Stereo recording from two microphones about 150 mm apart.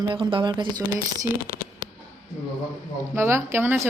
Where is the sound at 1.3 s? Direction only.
70° left (ahead or behind).